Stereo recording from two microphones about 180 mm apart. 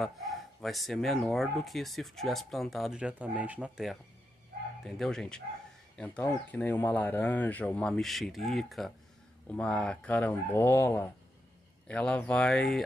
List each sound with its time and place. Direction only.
0.6 s speech: centre (ahead or behind)